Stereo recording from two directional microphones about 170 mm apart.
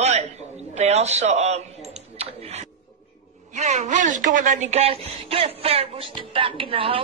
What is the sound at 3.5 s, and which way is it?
Speech, 45° right (ahead or behind).